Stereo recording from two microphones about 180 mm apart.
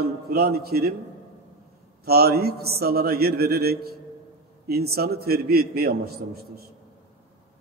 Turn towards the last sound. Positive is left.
turn(degrees=-60)  # may be behind; listen again after turning